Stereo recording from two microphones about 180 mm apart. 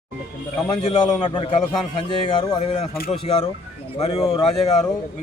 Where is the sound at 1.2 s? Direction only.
25° left (ahead or behind).